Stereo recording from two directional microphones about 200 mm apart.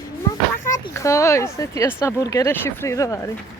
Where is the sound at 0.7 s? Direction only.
15° left (ahead or behind).